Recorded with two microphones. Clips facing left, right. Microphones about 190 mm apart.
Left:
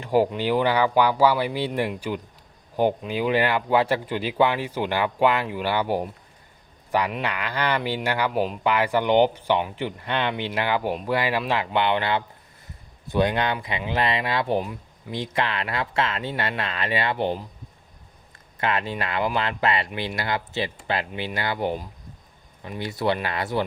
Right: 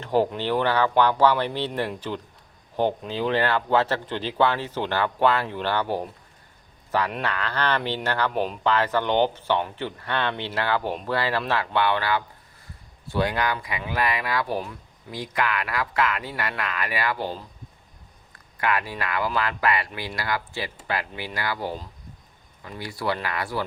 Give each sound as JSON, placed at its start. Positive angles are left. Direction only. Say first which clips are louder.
{"t": 0.0, "sound": "speech", "louder": "left 2 dB", "side_deg": 10}
{"t": 7.2, "sound": "speech", "louder": "even", "side_deg": 15}
{"t": 18.5, "sound": "speech", "louder": "left 1 dB", "side_deg": 25}